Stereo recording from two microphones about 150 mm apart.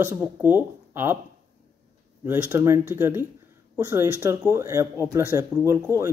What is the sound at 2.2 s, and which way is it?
Speech, 15° right (ahead or behind).